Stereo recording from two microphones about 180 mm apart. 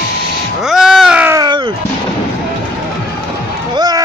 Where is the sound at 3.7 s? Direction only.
20° right (ahead or behind).